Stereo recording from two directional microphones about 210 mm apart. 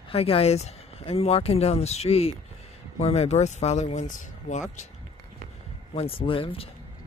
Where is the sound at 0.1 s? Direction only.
30° left (ahead or behind).